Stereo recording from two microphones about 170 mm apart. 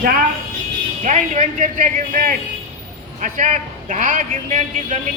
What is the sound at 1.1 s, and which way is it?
A man's voice, 45° right (ahead or behind).